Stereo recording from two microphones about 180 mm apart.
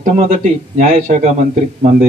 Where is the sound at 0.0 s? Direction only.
45° right (ahead or behind).